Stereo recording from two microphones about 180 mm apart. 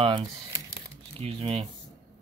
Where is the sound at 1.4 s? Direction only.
30° right (ahead or behind).